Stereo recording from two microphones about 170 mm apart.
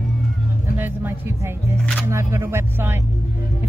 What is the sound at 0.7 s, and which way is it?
Speech, 10° right (ahead or behind).